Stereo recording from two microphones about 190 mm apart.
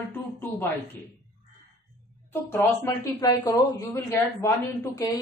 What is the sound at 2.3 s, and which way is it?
Speech, 10° left (ahead or behind).